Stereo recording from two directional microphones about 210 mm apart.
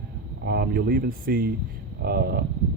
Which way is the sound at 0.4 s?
45° right (ahead or behind).